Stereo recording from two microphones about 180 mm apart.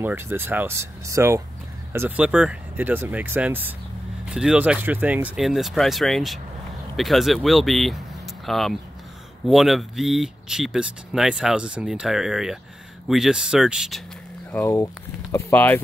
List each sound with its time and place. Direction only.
0.0 s speech: 10° right (ahead or behind)
14.6 s speech: 15° left (ahead or behind)